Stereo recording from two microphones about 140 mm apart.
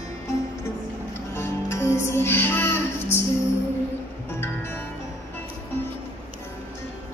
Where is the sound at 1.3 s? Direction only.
20° left (ahead or behind).